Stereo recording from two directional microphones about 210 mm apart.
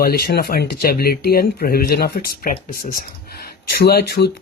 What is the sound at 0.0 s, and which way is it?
Speech, 50° left (ahead or behind).